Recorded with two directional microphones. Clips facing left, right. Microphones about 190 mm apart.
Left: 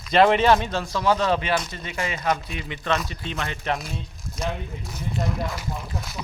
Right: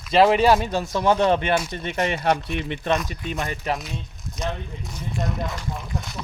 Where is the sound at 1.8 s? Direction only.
60° right (ahead or behind).